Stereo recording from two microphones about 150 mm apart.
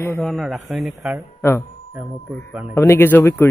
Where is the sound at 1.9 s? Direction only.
10° right (ahead or behind).